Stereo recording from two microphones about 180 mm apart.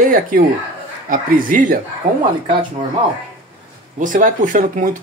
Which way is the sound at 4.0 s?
45° right (ahead or behind).